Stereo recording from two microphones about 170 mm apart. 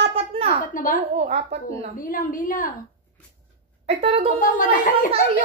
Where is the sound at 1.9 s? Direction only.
55° left (ahead or behind).